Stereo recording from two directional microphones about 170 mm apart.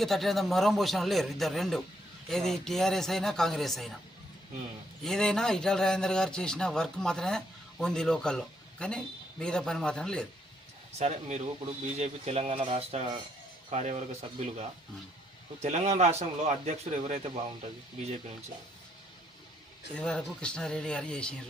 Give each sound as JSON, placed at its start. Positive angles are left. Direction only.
{"t": 0.0, "sound": "a man's voice", "side_deg": 0}
{"t": 5.0, "sound": "a man's voice", "side_deg": 5}
{"t": 10.9, "sound": "speech", "side_deg": -40}
{"t": 19.9, "sound": "a man's voice", "side_deg": 5}